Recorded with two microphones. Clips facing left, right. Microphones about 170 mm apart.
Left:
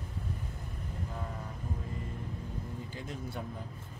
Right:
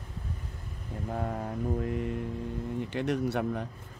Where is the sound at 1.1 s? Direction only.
55° right (ahead or behind).